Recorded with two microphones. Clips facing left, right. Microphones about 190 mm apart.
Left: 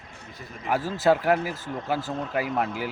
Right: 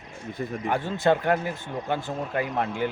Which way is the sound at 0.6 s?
5° left (ahead or behind).